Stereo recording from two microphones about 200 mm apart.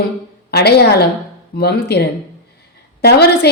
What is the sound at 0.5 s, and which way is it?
A woman's voice, 55° left (ahead or behind).